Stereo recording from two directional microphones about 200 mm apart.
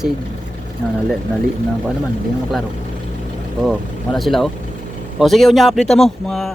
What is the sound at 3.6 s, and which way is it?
Speech, centre (ahead or behind).